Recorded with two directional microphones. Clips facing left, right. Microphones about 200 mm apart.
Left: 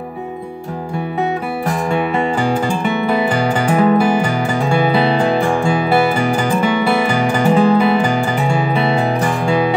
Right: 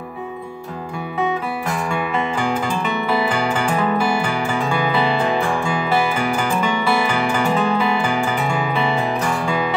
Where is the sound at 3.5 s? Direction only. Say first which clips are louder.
Left 6 dB; 40° left (ahead or behind).